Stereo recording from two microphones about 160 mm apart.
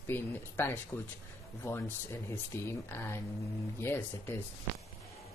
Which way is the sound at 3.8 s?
15° left (ahead or behind).